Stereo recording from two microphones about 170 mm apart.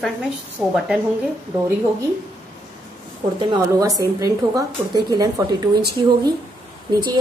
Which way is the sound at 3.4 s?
20° right (ahead or behind).